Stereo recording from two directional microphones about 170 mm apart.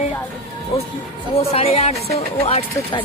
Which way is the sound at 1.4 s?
40° left (ahead or behind).